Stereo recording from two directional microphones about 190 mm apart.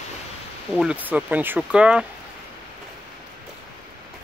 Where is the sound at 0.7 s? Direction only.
5° right (ahead or behind).